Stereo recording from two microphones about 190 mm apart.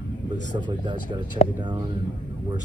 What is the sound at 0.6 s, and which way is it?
Speech, 25° right (ahead or behind).